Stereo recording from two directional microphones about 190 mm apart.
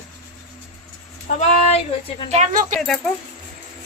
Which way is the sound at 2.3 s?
40° right (ahead or behind).